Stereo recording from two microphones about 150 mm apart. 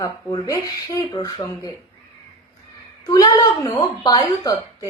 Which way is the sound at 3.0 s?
25° left (ahead or behind).